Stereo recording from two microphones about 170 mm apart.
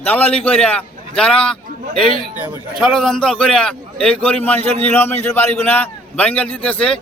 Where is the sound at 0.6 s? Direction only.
5° left (ahead or behind).